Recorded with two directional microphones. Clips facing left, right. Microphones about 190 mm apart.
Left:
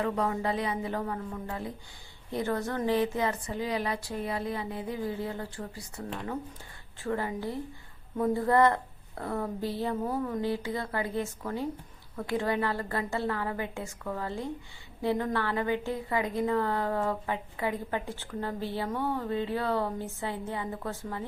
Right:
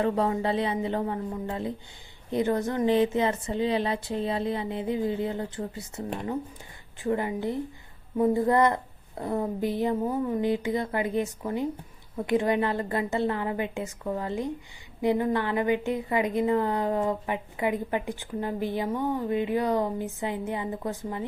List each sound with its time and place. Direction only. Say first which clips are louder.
0.0 s a woman's voice: right 4 dB; 30° right (ahead or behind)